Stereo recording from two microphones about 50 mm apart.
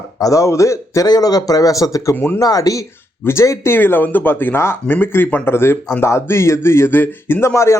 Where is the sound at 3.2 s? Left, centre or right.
Left.